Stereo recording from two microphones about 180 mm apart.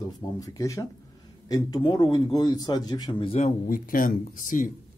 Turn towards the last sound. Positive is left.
turn(degrees=45)  # may be behind; listen again after turning